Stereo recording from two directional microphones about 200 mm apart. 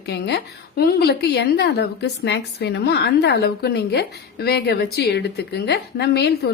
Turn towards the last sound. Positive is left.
turn(degrees=55)  # may be behind; listen again after turning